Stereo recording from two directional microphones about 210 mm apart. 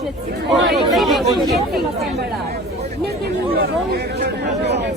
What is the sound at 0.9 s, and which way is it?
Speech, centre (ahead or behind).